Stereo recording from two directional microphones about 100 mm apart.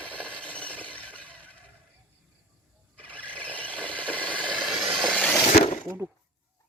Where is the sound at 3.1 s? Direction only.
10° left (ahead or behind).